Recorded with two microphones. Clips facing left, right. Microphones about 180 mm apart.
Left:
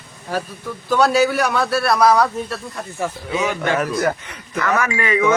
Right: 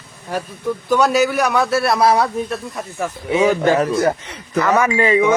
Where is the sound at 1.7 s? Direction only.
25° right (ahead or behind).